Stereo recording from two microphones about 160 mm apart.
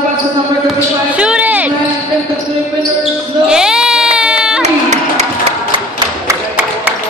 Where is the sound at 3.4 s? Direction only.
5° right (ahead or behind).